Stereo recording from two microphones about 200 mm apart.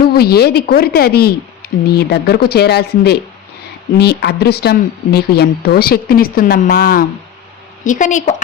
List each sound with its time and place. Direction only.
0.0 s a woman's voice: 50° left (ahead or behind)